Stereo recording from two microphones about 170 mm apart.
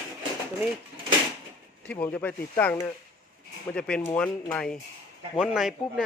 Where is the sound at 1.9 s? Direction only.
10° left (ahead or behind).